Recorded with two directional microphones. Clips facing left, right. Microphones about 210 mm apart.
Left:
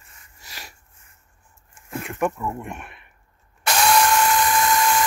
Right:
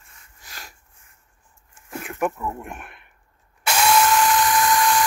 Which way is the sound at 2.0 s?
5° right (ahead or behind).